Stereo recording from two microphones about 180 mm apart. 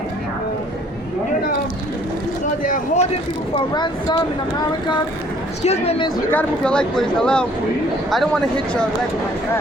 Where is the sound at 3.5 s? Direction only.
25° left (ahead or behind).